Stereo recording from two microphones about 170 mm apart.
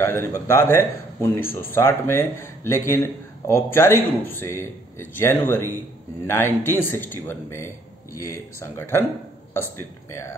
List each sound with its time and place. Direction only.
0.0 s a man's voice: 15° left (ahead or behind)